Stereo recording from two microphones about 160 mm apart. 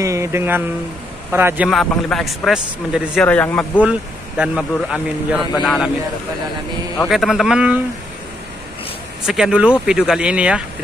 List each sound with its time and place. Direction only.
0.0 s speech: 20° right (ahead or behind)
1.7 s speech: centre (ahead or behind)
3.3 s speech: 10° left (ahead or behind)
4.4 s speech: 5° right (ahead or behind)
7.1 s speech: centre (ahead or behind)
9.2 s speech: 5° right (ahead or behind)